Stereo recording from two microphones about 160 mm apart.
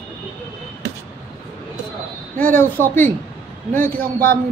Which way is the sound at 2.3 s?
10° left (ahead or behind).